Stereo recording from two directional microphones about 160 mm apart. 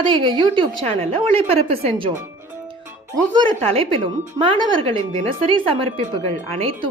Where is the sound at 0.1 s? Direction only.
30° right (ahead or behind).